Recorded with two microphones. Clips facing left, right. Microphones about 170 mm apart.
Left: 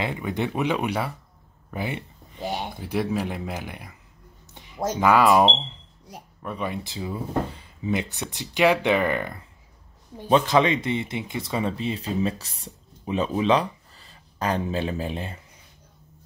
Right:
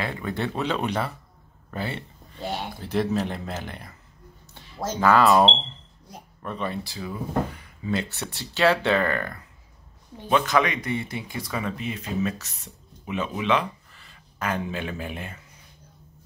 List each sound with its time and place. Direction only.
0.0 s speech: 15° left (ahead or behind)
4.6 s a sound: 15° left (ahead or behind)
4.9 s speech: 15° left (ahead or behind)
10.3 s speech: 30° left (ahead or behind)